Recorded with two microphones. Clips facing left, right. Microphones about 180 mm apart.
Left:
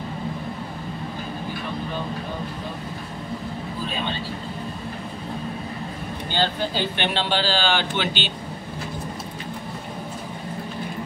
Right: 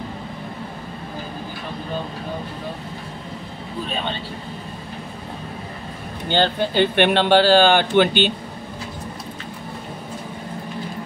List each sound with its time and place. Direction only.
6.3 s speech: 60° right (ahead or behind)